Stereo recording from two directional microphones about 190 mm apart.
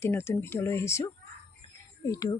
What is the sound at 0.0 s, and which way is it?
Speech, 10° left (ahead or behind).